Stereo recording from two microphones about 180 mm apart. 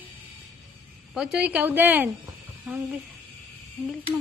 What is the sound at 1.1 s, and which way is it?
A woman's voice, 5° right (ahead or behind).